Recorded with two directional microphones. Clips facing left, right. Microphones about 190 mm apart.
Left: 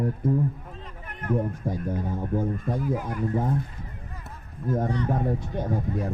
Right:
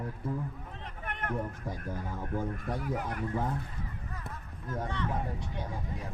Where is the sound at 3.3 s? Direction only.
25° left (ahead or behind).